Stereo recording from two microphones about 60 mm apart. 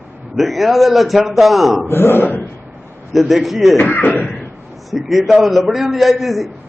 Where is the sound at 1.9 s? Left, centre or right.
Left.